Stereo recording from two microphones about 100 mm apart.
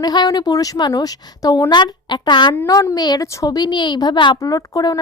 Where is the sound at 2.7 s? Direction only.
35° left (ahead or behind).